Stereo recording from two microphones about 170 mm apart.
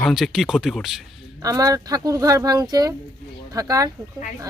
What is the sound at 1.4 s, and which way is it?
A woman's voice, 20° right (ahead or behind).